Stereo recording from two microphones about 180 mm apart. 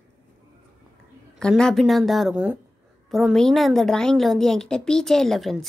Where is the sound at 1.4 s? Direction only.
5° left (ahead or behind).